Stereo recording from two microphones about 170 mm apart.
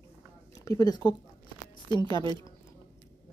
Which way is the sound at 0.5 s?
20° left (ahead or behind).